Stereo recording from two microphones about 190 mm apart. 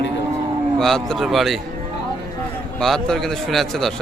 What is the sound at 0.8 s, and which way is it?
Speech, centre (ahead or behind).